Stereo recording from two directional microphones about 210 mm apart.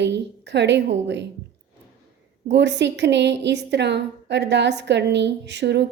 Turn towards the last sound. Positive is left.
turn(degrees=-55)  # may be behind; listen again after turning